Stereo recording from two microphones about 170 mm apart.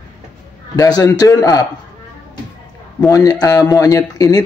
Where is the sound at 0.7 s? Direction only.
20° left (ahead or behind).